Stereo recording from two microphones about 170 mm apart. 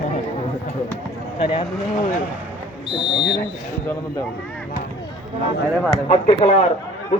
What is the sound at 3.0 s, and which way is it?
Speech, 5° right (ahead or behind).